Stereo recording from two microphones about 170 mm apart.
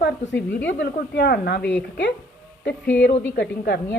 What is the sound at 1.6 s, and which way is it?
Speech, 5° left (ahead or behind).